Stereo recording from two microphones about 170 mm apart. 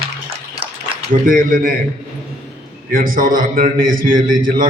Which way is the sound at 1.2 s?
55° right (ahead or behind).